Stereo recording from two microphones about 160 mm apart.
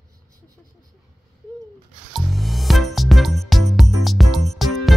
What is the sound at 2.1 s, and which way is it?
Music, centre (ahead or behind).